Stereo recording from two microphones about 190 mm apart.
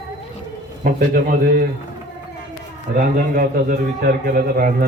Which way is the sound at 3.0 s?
45° right (ahead or behind).